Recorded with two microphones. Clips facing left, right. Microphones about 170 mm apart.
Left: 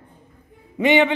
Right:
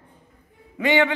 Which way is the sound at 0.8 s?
20° left (ahead or behind).